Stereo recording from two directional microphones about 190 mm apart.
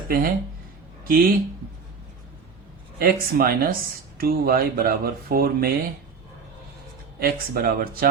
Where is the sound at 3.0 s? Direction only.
50° right (ahead or behind).